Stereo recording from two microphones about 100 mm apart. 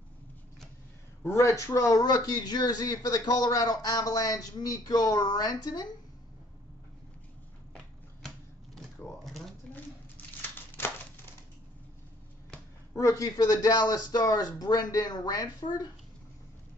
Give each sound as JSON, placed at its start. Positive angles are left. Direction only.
{"t": 1.2, "sound": "speech", "side_deg": 30}
{"t": 8.7, "sound": "cash register", "side_deg": 0}
{"t": 12.9, "sound": "speech", "side_deg": 35}